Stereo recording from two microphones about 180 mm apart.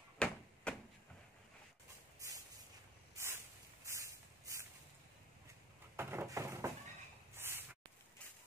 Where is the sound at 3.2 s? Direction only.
15° right (ahead or behind).